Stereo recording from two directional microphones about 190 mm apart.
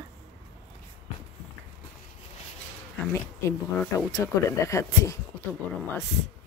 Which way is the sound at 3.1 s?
15° left (ahead or behind).